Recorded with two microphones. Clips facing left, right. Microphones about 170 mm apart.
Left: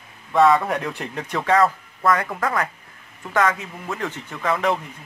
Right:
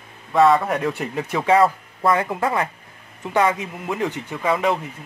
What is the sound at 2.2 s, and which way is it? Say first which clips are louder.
A man's voice: right 2 dB; 20° right (ahead or behind).